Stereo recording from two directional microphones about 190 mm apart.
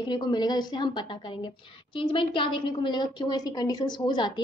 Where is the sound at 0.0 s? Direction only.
25° left (ahead or behind).